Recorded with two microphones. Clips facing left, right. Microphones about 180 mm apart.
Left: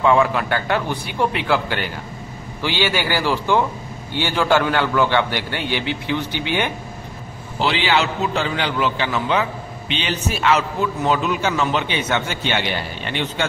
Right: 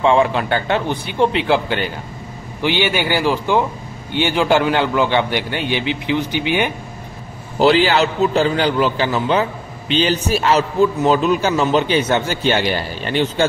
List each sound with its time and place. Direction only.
0.0 s a man's voice: 25° right (ahead or behind)
7.5 s a man's voice: 40° right (ahead or behind)